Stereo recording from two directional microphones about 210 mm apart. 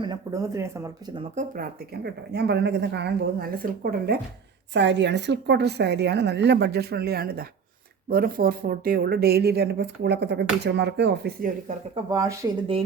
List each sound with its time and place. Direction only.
0.0 s speech: 20° right (ahead or behind)
1.4 s speech: 45° right (ahead or behind)
12.0 s speech: 15° right (ahead or behind)